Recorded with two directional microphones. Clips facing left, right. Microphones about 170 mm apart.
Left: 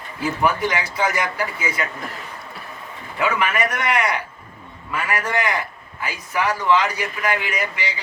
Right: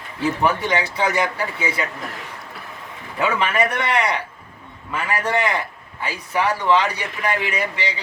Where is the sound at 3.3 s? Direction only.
30° right (ahead or behind).